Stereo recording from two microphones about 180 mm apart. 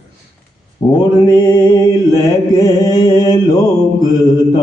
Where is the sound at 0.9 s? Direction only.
25° left (ahead or behind).